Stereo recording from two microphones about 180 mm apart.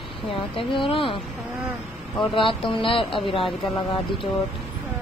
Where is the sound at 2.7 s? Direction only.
30° left (ahead or behind).